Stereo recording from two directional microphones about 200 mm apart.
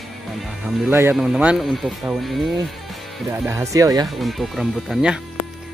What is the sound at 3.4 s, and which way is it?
Speech, 15° right (ahead or behind).